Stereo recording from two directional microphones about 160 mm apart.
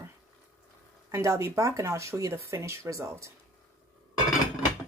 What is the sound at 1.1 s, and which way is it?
Speech, 20° right (ahead or behind).